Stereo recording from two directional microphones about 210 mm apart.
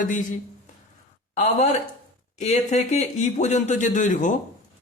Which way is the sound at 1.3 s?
35° left (ahead or behind).